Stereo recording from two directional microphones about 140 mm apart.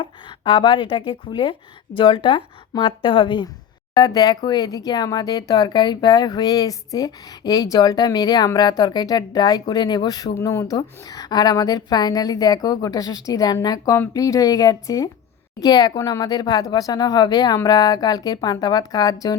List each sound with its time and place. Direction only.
0.0 s speech: 35° left (ahead or behind)